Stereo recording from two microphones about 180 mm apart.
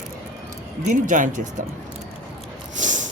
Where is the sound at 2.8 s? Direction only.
45° right (ahead or behind).